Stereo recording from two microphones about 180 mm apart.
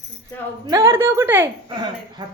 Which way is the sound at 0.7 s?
15° right (ahead or behind).